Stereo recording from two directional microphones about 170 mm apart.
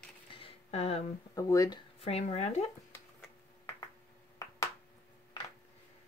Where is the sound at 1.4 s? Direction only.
20° left (ahead or behind).